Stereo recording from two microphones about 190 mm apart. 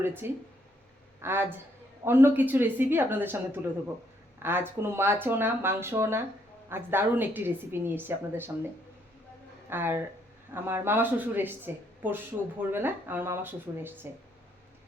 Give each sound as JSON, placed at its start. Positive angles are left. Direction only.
{"t": 0.0, "sound": "a woman's voice", "side_deg": -10}
{"t": 9.6, "sound": "a woman's voice", "side_deg": -10}
{"t": 12.7, "sound": "a woman's voice", "side_deg": -10}